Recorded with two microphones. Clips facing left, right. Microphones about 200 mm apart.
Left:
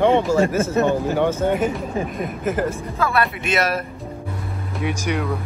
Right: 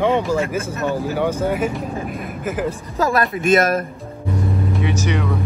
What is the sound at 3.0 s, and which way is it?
Speech, 45° right (ahead or behind).